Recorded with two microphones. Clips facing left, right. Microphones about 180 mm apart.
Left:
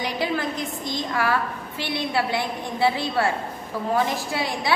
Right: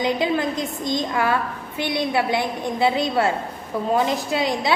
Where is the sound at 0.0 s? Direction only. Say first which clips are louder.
Right 5 dB; 20° right (ahead or behind).